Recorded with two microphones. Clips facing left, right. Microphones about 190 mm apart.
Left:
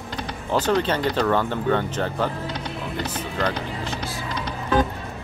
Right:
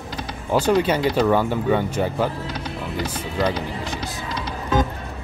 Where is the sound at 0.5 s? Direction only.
10° right (ahead or behind).